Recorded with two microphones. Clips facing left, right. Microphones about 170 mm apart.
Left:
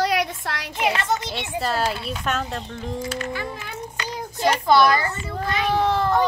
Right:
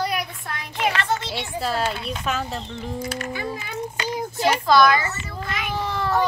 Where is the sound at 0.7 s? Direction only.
15° left (ahead or behind).